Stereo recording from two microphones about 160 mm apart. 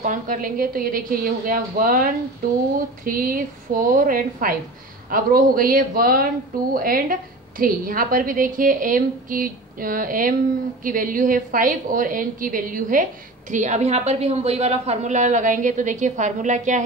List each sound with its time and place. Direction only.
0.0 s speech: 55° right (ahead or behind)
13.5 s a woman's voice: 50° right (ahead or behind)